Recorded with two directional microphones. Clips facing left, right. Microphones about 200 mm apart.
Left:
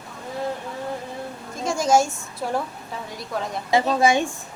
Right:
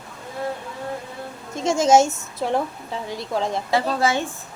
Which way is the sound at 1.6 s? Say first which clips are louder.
Right 3 dB; 25° right (ahead or behind).